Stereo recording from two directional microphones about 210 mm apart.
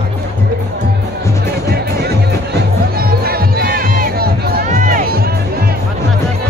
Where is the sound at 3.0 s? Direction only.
45° right (ahead or behind).